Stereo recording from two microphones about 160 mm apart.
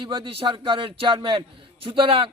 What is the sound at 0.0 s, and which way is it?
A man's voice, 30° right (ahead or behind).